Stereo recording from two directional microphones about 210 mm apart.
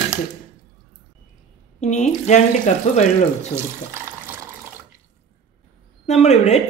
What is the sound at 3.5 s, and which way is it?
Speech, 10° right (ahead or behind).